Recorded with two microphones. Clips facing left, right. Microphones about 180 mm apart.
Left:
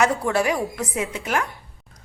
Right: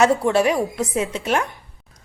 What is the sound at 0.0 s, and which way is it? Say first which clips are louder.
A woman's voice: right 4 dB; 25° right (ahead or behind).